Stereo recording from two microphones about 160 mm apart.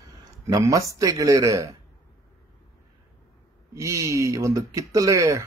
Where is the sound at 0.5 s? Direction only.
20° right (ahead or behind).